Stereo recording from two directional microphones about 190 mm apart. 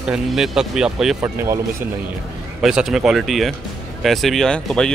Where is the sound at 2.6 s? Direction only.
Centre (ahead or behind).